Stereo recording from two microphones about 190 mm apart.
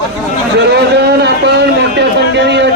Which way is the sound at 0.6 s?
65° right (ahead or behind).